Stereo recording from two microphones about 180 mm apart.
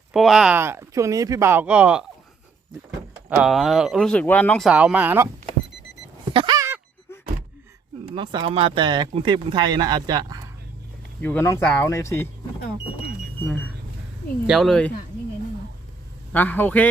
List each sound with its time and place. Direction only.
0.1 s speech: centre (ahead or behind)
3.4 s speech: centre (ahead or behind)
4.7 s speech: 5° right (ahead or behind)
6.3 s a sound: 25° right (ahead or behind)
8.1 s speech: 25° right (ahead or behind)
11.2 s speech: 10° left (ahead or behind)
14.4 s speech: centre (ahead or behind)
16.3 s speech: 10° left (ahead or behind)